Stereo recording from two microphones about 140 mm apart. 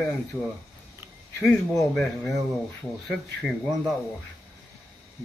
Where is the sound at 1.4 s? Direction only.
Centre (ahead or behind).